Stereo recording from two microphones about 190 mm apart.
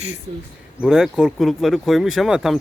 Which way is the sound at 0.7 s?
5° right (ahead or behind).